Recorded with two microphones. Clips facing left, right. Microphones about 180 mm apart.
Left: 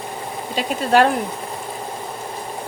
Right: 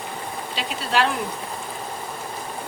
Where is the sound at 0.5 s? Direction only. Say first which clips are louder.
Left 8 dB; 45° left (ahead or behind).